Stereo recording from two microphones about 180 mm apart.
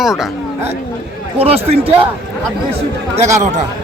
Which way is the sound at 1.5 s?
35° right (ahead or behind).